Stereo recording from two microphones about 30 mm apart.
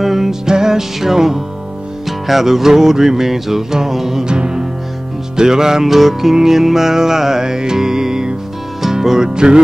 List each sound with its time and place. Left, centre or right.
0.0 s music: centre
0.5 s music: centre
4.3 s music: right
9.3 s music: right